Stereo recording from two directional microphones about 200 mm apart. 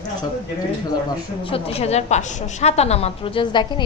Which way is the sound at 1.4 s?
30° left (ahead or behind).